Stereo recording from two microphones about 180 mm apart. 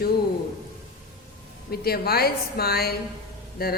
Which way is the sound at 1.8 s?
60° left (ahead or behind).